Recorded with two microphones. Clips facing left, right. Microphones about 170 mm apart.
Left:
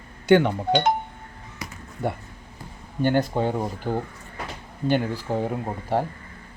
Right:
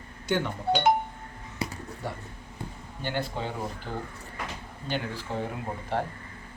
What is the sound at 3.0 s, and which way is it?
Speech, 45° left (ahead or behind).